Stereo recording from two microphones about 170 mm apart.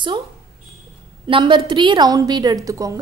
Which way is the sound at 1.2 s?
30° right (ahead or behind).